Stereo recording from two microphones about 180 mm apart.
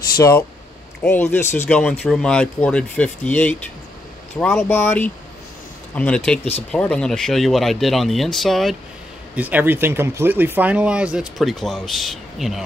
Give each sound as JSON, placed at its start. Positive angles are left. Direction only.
{"t": 0.2, "sound": "speech", "side_deg": 15}